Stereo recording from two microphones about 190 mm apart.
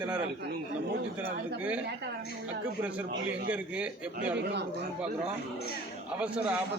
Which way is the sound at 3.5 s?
5° right (ahead or behind).